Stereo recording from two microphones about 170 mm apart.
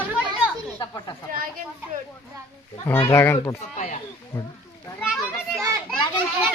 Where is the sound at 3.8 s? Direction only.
45° left (ahead or behind).